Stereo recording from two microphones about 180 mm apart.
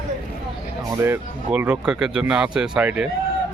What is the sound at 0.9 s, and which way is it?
Speech, 15° right (ahead or behind).